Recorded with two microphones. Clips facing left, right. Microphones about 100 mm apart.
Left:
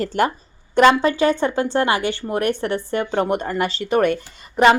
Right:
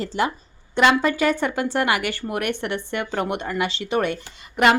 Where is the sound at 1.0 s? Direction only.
30° left (ahead or behind); by 4.6 s 45° left (ahead or behind).